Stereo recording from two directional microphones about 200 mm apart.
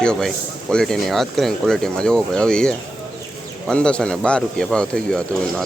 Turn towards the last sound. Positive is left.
turn(degrees=5)  # may be behind; listen again after turning